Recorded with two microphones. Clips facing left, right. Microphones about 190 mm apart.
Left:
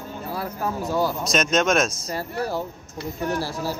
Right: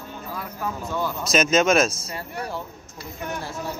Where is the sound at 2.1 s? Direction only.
35° left (ahead or behind).